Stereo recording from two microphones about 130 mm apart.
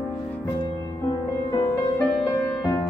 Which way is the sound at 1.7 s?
20° left (ahead or behind).